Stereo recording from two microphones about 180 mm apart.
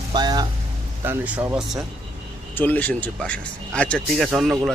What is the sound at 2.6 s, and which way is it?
Speech, 10° left (ahead or behind).